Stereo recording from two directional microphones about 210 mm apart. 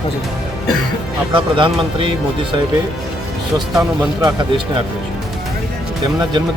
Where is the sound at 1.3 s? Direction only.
25° right (ahead or behind).